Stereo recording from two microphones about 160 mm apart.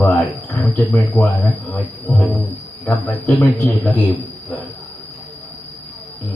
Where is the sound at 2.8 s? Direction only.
10° left (ahead or behind).